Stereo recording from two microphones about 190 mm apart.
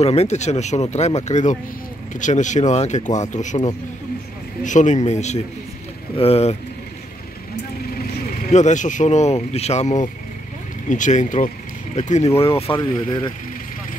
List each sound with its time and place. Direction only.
0.0 s speech: 35° left (ahead or behind)
8.5 s speech: 40° left (ahead or behind)